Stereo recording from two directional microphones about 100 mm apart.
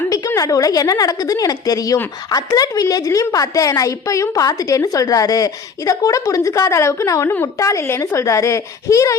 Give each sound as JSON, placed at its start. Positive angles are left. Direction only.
{"t": 0.1, "sound": "a woman's voice", "side_deg": 35}